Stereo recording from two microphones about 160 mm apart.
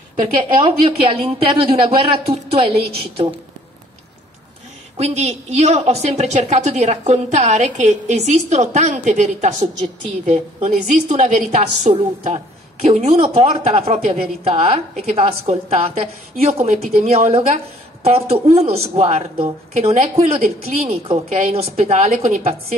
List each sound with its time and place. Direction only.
0.2 s a woman's voice: 30° right (ahead or behind)
4.9 s a woman's voice: 45° right (ahead or behind)